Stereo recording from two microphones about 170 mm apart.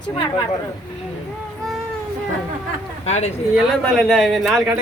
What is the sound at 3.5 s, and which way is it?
Speech, centre (ahead or behind).